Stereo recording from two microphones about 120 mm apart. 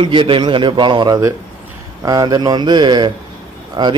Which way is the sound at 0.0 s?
45° right (ahead or behind).